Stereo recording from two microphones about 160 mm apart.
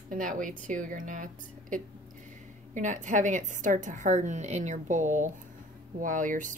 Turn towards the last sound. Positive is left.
turn(degrees=-55)  # may be behind; listen again after turning